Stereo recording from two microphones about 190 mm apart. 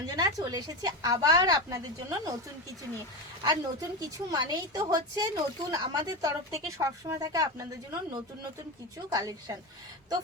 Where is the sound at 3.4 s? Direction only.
20° right (ahead or behind).